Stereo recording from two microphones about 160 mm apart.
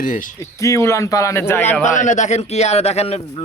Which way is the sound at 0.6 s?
20° left (ahead or behind).